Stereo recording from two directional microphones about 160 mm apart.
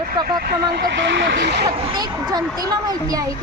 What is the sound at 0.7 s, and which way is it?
Speech, 90° right.